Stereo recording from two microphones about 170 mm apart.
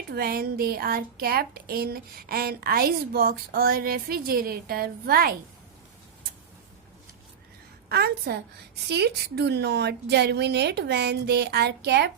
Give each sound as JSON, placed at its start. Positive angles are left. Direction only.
{"t": 0.1, "sound": "speech", "side_deg": -60}
{"t": 7.9, "sound": "a woman's voice", "side_deg": -70}